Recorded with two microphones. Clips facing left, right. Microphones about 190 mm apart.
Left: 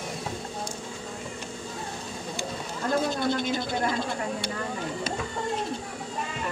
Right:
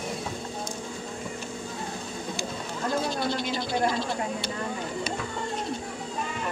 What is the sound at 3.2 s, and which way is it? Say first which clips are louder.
Speech: left 2 dB; 50° left (ahead or behind).